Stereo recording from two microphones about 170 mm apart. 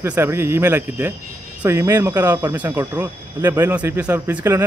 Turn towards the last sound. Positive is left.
turn(degrees=-15)  # may be behind; listen again after turning